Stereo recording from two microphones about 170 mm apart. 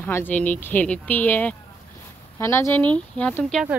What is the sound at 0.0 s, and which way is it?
Speech, 10° left (ahead or behind).